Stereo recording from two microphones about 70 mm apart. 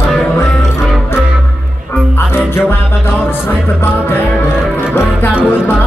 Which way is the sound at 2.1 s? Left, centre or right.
Left.